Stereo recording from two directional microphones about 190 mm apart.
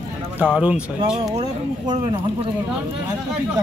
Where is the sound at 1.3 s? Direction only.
25° right (ahead or behind).